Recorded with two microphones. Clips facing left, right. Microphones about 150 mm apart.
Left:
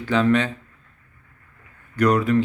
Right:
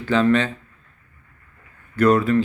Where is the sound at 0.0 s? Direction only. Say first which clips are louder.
Right 1 dB; 15° left (ahead or behind).